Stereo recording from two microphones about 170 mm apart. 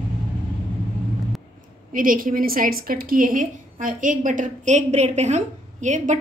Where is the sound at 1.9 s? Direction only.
55° right (ahead or behind).